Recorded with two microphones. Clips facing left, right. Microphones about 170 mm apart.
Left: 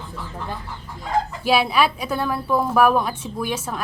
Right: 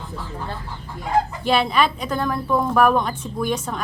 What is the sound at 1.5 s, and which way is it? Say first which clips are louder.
A woman's voice: left 2 dB; 5° left (ahead or behind).